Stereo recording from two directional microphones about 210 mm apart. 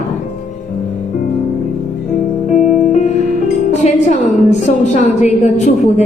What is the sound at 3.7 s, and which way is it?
Music, 35° left (ahead or behind).